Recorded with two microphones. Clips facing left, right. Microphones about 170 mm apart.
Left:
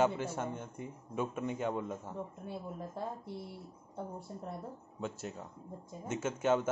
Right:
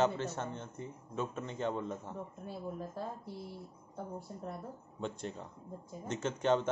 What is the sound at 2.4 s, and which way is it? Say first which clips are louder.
Speech: right 1 dB; 20° left (ahead or behind).